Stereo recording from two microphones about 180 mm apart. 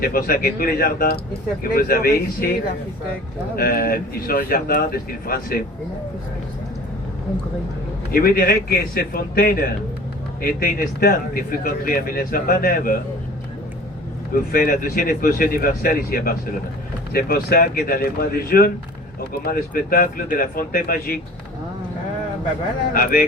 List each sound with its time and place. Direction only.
0.0 s a man's voice: 55° left (ahead or behind)
8.1 s a man's voice: 55° left (ahead or behind)
14.3 s a man's voice: 50° left (ahead or behind)